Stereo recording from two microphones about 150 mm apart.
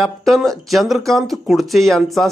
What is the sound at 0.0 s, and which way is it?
Speech, centre (ahead or behind).